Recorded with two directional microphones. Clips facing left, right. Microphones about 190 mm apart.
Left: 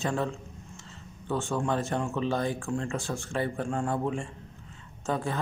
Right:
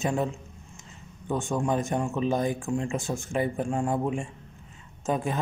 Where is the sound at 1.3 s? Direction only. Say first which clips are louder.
Right 2 dB; 15° right (ahead or behind).